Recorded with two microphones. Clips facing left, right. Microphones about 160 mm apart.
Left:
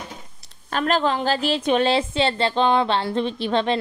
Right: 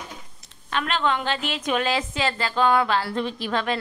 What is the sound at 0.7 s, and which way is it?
A woman's voice, 40° left (ahead or behind).